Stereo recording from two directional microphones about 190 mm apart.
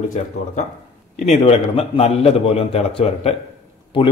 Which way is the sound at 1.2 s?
35° left (ahead or behind).